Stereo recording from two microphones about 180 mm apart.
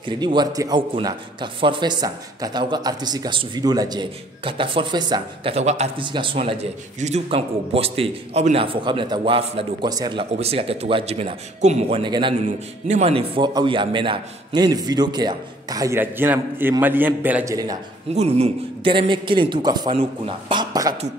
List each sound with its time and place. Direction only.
0.0 s a man's voice: 25° right (ahead or behind)
5.5 s a man's voice: 40° right (ahead or behind)
6.0 s a man's voice: 25° right (ahead or behind)
10.3 s a man's voice: 35° right (ahead or behind)
12.8 s a man's voice: 35° right (ahead or behind); by 17.6 s 10° right (ahead or behind)
18.1 s a man's voice: 35° right (ahead or behind)